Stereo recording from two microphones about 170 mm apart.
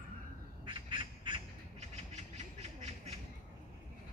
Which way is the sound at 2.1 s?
40° right (ahead or behind).